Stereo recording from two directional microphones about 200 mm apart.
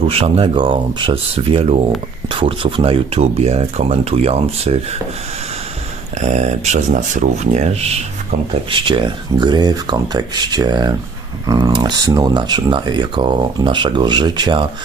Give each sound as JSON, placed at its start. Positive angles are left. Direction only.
{"t": 0.1, "sound": "speech", "side_deg": -30}
{"t": 6.1, "sound": "speech", "side_deg": -35}